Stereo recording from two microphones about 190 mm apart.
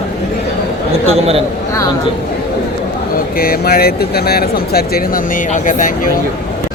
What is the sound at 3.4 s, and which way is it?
Speech, 50° left (ahead or behind).